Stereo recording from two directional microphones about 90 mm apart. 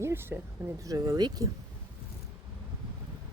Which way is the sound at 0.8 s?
40° right (ahead or behind).